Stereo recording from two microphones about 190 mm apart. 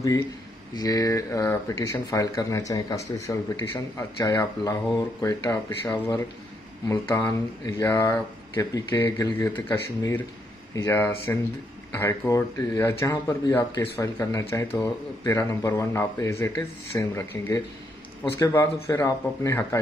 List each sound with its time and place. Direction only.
0.7 s speech: 20° left (ahead or behind)